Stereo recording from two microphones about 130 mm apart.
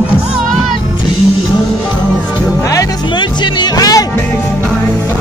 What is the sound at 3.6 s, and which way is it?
Music, 30° left (ahead or behind).